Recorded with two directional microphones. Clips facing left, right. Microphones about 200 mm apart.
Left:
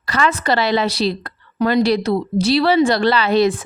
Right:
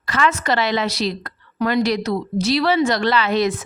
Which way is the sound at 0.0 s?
35° left (ahead or behind).